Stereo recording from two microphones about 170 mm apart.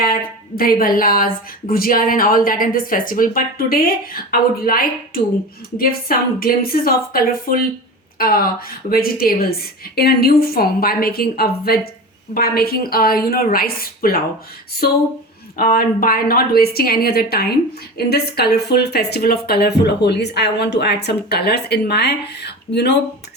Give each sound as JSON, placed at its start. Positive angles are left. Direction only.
{"t": 0.0, "sound": "a woman's voice", "side_deg": 60}
{"t": 15.5, "sound": "a woman's voice", "side_deg": 60}